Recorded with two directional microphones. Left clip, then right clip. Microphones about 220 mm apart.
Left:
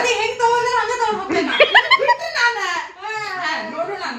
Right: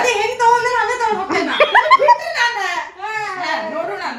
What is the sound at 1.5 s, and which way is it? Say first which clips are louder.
Speech: right 2 dB; 15° left (ahead or behind).